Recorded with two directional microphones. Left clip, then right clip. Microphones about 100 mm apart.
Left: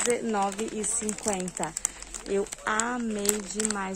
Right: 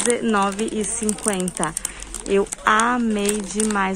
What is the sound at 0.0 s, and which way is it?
Speech, 25° left (ahead or behind).